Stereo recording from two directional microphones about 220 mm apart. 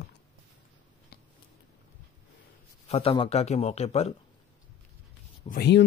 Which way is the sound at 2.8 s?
25° left (ahead or behind).